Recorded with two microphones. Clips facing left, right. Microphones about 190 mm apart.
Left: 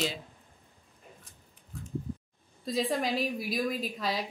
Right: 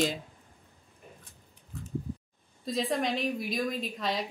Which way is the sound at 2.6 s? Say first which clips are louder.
Even; centre (ahead or behind).